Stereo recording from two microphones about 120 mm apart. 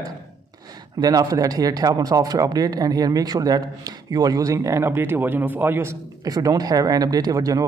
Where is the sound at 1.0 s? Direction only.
30° right (ahead or behind).